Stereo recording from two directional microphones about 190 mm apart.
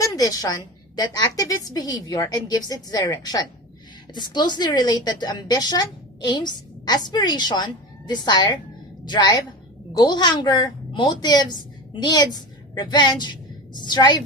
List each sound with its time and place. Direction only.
0.0 s a woman's voice: 20° left (ahead or behind)